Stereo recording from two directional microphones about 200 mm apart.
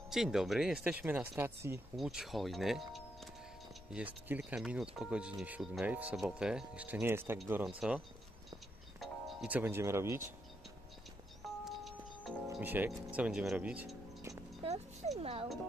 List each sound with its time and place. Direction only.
0.1 s speech: centre (ahead or behind)
2.0 s speech: centre (ahead or behind)
9.0 s speech: 5° right (ahead or behind)
11.4 s music: centre (ahead or behind)
12.4 s speech: 10° right (ahead or behind)
14.6 s music: 30° right (ahead or behind)